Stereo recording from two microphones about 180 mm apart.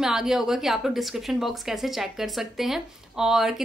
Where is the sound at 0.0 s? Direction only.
Centre (ahead or behind).